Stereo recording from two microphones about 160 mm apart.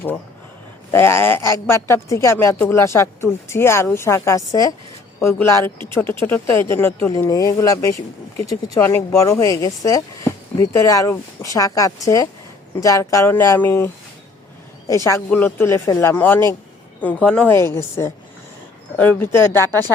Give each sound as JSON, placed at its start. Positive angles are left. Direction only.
{"t": 0.9, "sound": "speech", "side_deg": 15}